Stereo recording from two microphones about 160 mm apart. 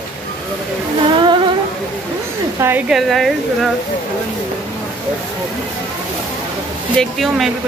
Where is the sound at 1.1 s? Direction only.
30° right (ahead or behind).